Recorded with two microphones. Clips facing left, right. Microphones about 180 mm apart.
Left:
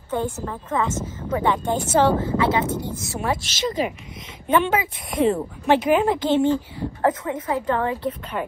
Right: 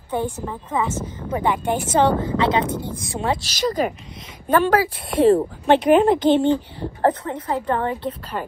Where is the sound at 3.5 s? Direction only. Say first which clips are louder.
Right 3 dB; 45° right (ahead or behind).